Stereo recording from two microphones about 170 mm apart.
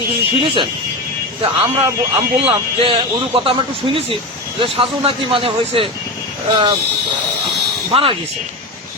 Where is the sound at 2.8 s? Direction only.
30° right (ahead or behind).